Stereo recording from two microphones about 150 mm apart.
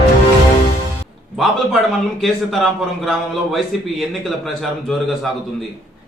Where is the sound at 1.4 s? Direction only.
Centre (ahead or behind).